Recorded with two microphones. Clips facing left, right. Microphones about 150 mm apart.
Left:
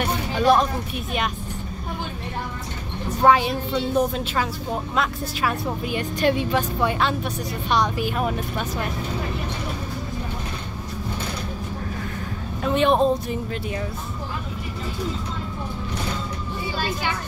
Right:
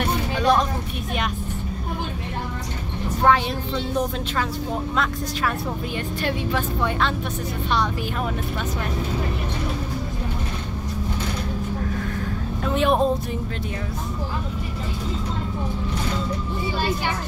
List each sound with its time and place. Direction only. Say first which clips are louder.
0.0 s vehicle: left 1 dB; 5° left (ahead or behind)
3.3 s a woman's voice: left 2 dB; 10° left (ahead or behind)
4.9 s a woman's voice: even; 5° left (ahead or behind)
12.6 s speech: left 2 dB; 5° right (ahead or behind)